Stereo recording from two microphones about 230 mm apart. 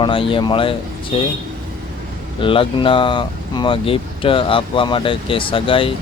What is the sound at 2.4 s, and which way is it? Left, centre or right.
Speech, left.